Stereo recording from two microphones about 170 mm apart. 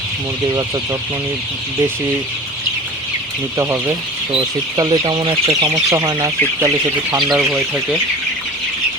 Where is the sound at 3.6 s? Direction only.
15° right (ahead or behind).